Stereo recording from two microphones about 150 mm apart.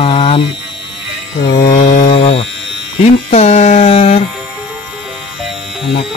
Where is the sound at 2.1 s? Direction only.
40° left (ahead or behind).